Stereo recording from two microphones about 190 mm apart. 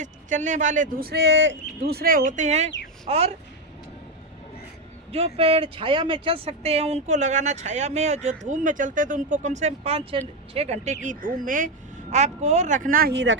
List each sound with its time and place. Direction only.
0.0 s speech: 40° right (ahead or behind); by 1.5 s 70° right (ahead or behind)
1.8 s speech: 55° right (ahead or behind); by 3.3 s 35° right (ahead or behind)
5.1 s speech: 30° right (ahead or behind); by 13.3 s 60° right (ahead or behind)